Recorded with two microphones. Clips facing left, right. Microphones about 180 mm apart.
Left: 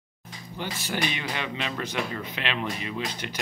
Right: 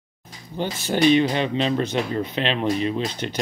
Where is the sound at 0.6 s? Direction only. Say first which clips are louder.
Right 9 dB; 25° right (ahead or behind).